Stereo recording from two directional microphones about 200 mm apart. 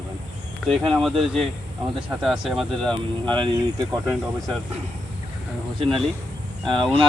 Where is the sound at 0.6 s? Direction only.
Centre (ahead or behind).